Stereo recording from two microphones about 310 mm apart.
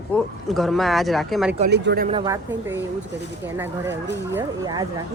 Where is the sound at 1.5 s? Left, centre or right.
Right.